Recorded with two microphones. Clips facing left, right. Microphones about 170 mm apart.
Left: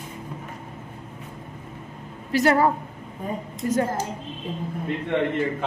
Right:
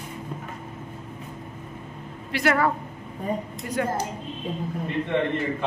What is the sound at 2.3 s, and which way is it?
A woman's voice, 35° left (ahead or behind).